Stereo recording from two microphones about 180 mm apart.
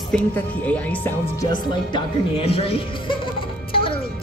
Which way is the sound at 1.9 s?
30° left (ahead or behind).